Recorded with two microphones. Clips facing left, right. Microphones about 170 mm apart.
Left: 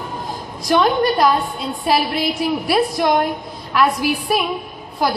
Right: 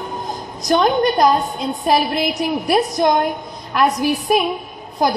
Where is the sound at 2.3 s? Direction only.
45° right (ahead or behind).